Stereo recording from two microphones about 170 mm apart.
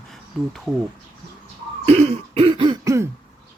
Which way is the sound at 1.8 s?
35° right (ahead or behind).